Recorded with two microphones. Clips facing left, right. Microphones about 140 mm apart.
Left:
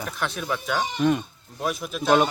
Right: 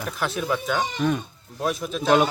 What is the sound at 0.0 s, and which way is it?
A man's voice, centre (ahead or behind).